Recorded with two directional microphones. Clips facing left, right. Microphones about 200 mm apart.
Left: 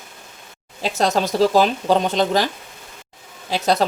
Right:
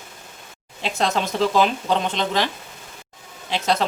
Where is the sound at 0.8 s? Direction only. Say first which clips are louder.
Left 3 dB; 40° left (ahead or behind).